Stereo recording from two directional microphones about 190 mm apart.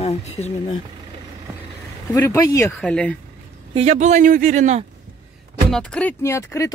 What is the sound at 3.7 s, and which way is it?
A man's voice, 35° right (ahead or behind).